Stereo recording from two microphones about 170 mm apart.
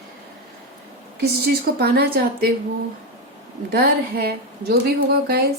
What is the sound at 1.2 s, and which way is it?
Speech, 70° right (ahead or behind).